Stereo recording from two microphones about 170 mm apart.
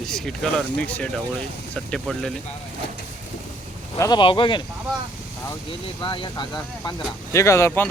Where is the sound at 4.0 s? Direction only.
25° left (ahead or behind).